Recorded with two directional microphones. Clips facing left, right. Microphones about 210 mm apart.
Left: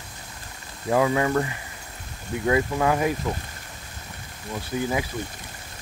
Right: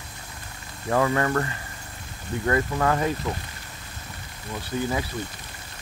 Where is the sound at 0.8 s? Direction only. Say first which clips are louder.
Left 1 dB; 10° left (ahead or behind).